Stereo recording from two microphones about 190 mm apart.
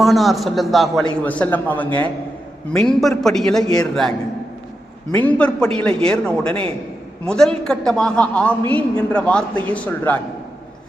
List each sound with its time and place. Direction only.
0.0 s a man's voice: centre (ahead or behind)
3.6 s a man's voice: 20° left (ahead or behind)
5.1 s a man's voice: 5° left (ahead or behind)